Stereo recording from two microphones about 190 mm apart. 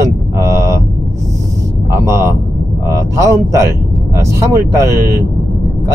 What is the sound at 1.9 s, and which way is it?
Speech, 15° right (ahead or behind).